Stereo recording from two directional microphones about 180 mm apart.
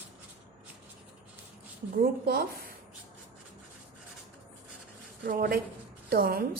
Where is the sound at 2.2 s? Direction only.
55° right (ahead or behind).